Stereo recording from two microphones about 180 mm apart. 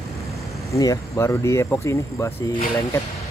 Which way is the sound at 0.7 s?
20° left (ahead or behind).